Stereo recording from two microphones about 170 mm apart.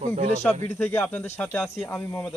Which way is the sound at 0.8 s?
10° left (ahead or behind).